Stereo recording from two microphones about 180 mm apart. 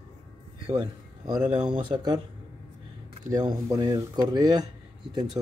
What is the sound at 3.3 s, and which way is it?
Speech, 20° right (ahead or behind).